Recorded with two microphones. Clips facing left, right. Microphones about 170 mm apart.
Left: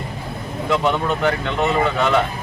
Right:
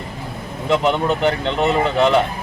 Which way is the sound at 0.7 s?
20° right (ahead or behind).